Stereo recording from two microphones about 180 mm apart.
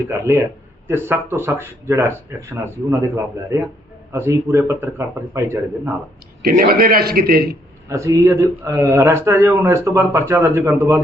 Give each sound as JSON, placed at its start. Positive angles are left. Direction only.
{"t": 0.1, "sound": "speech", "side_deg": -15}
{"t": 6.4, "sound": "a man's voice", "side_deg": -55}
{"t": 7.9, "sound": "speech", "side_deg": -15}